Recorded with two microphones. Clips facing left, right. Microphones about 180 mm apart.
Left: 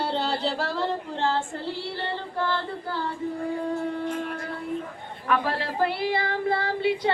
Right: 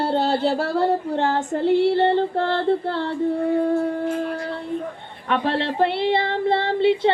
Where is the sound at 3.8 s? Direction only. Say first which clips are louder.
Right 5 dB; 40° right (ahead or behind).